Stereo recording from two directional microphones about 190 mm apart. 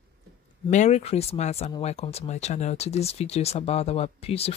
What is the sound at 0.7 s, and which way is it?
Speech, 35° left (ahead or behind).